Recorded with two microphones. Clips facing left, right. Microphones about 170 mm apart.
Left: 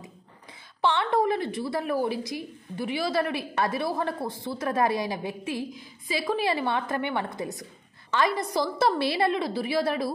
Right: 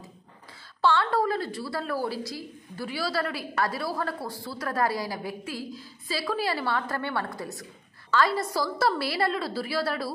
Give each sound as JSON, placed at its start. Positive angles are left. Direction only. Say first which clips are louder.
{"t": 0.7, "sound": "a woman's voice", "louder": "even", "side_deg": 20}